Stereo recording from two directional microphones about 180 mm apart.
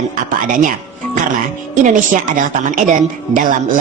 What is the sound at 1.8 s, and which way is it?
A woman's voice, 45° right (ahead or behind).